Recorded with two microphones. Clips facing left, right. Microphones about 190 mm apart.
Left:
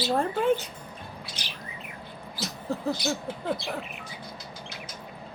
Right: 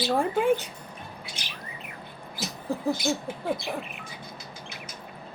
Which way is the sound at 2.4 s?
10° right (ahead or behind).